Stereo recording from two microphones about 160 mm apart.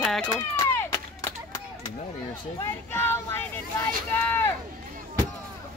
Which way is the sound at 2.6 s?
15° left (ahead or behind).